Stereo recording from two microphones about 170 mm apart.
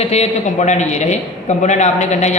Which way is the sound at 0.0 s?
40° left (ahead or behind).